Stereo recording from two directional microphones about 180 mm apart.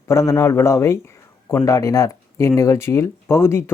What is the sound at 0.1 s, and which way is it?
Speech, 15° left (ahead or behind).